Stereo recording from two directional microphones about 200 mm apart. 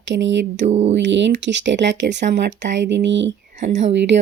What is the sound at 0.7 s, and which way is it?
Speech, 35° right (ahead or behind).